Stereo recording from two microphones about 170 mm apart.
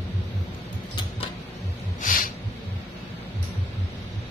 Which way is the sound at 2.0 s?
55° left (ahead or behind).